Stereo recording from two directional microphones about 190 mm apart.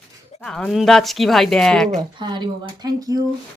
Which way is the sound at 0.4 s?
5° left (ahead or behind).